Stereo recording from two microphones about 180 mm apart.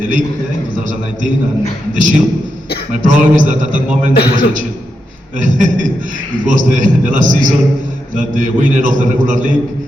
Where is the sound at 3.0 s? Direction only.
45° right (ahead or behind).